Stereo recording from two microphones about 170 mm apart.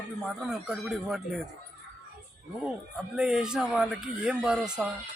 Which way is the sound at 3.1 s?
5° right (ahead or behind).